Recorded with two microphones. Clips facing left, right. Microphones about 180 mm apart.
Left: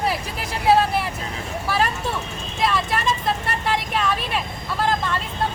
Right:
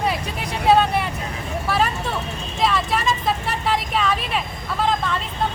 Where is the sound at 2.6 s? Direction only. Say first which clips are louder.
Right 1 dB; centre (ahead or behind).